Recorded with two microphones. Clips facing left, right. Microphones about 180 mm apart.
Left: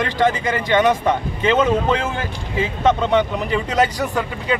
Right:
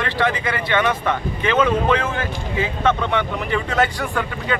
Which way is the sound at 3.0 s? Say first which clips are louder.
Left 4 dB; 20° left (ahead or behind).